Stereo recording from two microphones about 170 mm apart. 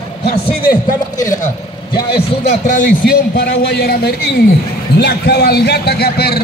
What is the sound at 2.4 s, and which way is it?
A man's voice, 50° left (ahead or behind).